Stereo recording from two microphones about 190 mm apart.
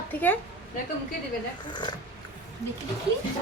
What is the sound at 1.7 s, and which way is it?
Speech, 25° left (ahead or behind).